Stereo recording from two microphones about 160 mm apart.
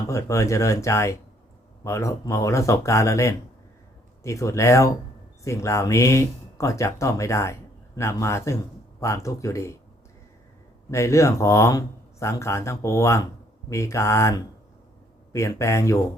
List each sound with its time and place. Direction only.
0.1 s speech: 20° left (ahead or behind)
10.9 s speech: 20° left (ahead or behind)